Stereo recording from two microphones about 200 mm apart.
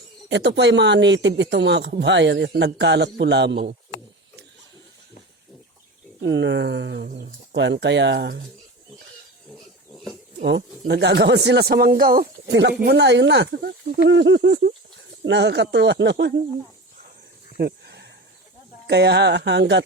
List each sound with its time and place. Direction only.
0.3 s speech: 60° right (ahead or behind)
6.2 s speech: 65° right (ahead or behind)
10.4 s speech: 60° right (ahead or behind)
17.6 s a sound: 55° right (ahead or behind)
18.9 s speech: 55° right (ahead or behind)